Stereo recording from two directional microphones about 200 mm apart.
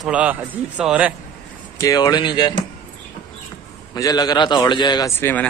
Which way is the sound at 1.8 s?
20° left (ahead or behind).